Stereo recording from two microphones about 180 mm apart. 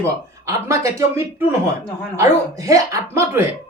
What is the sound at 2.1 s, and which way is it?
Speech, 15° right (ahead or behind).